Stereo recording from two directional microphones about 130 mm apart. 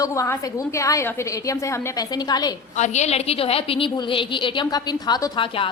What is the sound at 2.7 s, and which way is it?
A woman's voice, 65° left (ahead or behind).